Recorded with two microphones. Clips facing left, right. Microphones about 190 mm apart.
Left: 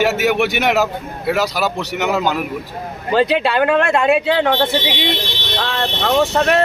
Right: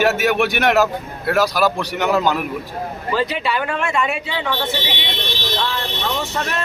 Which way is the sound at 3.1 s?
65° left (ahead or behind).